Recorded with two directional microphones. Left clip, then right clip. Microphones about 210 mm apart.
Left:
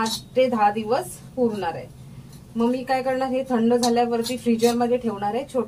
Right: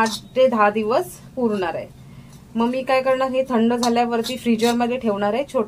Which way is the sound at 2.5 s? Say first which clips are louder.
Right 3 dB; 55° right (ahead or behind).